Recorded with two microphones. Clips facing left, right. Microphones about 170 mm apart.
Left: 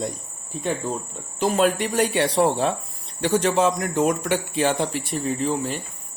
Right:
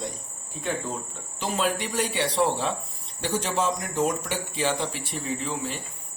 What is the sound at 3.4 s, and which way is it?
Speech, 65° left (ahead or behind).